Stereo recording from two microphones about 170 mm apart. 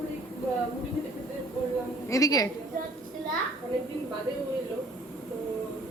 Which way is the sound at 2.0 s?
20° left (ahead or behind).